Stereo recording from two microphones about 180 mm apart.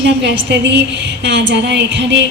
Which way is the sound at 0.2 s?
75° right (ahead or behind).